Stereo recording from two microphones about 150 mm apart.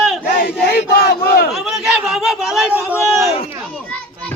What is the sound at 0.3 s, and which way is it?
Battle cry, 90° left.